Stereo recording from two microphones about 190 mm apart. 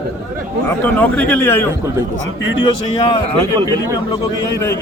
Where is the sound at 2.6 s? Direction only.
25° left (ahead or behind).